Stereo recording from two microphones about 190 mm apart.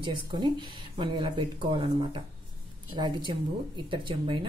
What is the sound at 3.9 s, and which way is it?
Speech, 25° right (ahead or behind).